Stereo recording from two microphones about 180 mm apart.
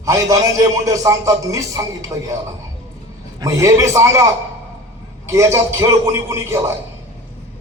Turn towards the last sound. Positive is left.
turn(degrees=-15)  # may be behind; listen again after turning